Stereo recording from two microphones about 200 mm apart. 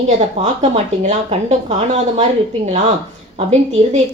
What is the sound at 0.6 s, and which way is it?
A woman's voice, 30° right (ahead or behind).